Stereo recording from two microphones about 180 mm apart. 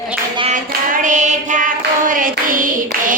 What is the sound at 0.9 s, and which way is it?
Music, 45° right (ahead or behind).